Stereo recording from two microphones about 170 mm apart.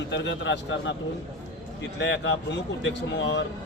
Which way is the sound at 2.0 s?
90° left.